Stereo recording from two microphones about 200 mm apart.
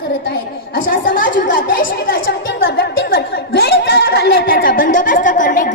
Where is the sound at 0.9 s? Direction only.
45° left (ahead or behind).